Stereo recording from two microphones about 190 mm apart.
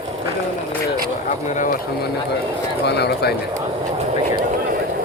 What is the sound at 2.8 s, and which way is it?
Speech, 60° left (ahead or behind).